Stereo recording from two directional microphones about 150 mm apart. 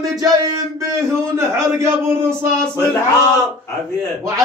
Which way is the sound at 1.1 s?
15° right (ahead or behind).